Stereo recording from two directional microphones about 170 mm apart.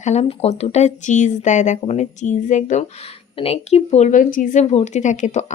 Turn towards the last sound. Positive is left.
turn(degrees=45)  # may be behind; listen again after turning